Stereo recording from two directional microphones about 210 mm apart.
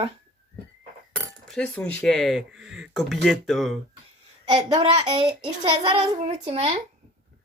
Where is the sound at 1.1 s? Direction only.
5° left (ahead or behind).